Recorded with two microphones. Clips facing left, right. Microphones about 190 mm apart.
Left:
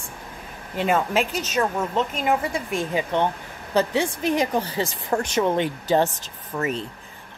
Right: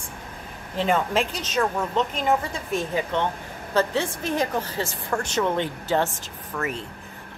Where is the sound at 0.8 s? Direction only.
5° left (ahead or behind).